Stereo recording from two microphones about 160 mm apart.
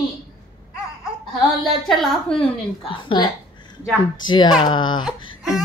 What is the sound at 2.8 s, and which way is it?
Speech, 30° left (ahead or behind).